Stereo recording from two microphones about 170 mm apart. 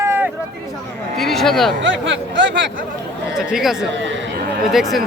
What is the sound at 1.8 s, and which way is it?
Speech, 90° right.